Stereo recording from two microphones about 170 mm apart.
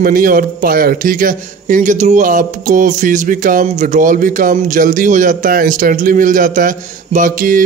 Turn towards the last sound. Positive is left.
turn(degrees=-50)  # may be behind; listen again after turning